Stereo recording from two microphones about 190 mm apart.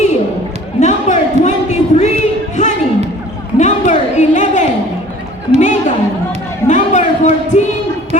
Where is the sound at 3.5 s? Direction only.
40° left (ahead or behind).